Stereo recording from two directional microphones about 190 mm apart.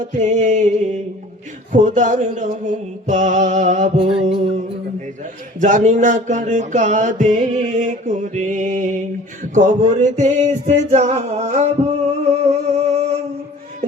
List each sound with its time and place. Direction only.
0.0 s music: 40° right (ahead or behind)
1.7 s music: 40° right (ahead or behind)
10.0 s music: 40° right (ahead or behind)